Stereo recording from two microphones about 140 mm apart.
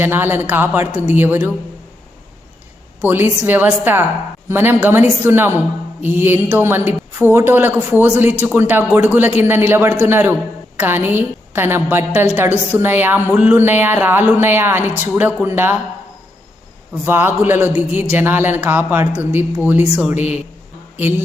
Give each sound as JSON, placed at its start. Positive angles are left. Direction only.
{"t": 0.0, "sound": "a woman's voice", "side_deg": -15}
{"t": 3.1, "sound": "a woman's voice", "side_deg": -15}
{"t": 16.9, "sound": "a woman's voice", "side_deg": -15}